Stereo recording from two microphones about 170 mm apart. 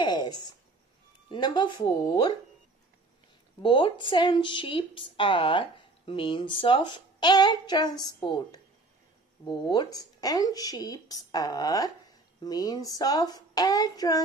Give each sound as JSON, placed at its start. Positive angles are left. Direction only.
{"t": 0.0, "sound": "a sound", "side_deg": 25}
{"t": 1.3, "sound": "speech", "side_deg": 25}
{"t": 3.6, "sound": "speech", "side_deg": 30}